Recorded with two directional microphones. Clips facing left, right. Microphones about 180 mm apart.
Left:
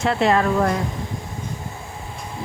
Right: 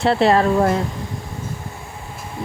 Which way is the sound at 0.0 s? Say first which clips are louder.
Right 3 dB; 35° right (ahead or behind).